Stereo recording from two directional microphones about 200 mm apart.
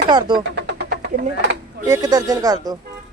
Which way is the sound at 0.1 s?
20° right (ahead or behind).